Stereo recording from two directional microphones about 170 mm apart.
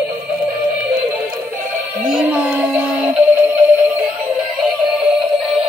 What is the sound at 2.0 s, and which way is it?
Music, 5° right (ahead or behind).